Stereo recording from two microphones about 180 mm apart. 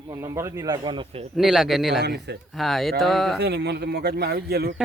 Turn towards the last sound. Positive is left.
turn(degrees=-60)  # may be behind; listen again after turning